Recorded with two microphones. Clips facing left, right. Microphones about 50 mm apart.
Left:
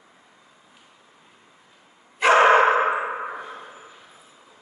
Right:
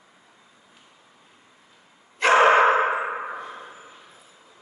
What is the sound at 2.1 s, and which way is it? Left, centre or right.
Bow-wow, centre.